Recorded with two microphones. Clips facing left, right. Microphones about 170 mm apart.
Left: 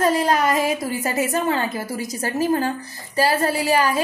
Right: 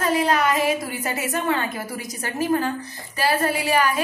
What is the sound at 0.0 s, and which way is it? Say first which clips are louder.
A woman's voice: left 2 dB; 40° left (ahead or behind).